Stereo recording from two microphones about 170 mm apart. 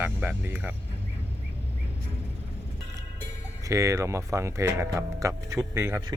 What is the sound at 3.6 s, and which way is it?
Speech, 20° right (ahead or behind).